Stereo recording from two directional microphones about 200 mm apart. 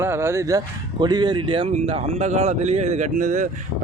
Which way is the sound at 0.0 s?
10° right (ahead or behind).